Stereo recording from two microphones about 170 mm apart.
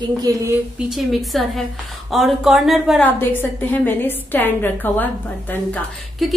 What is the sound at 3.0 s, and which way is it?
A woman's voice, 10° left (ahead or behind).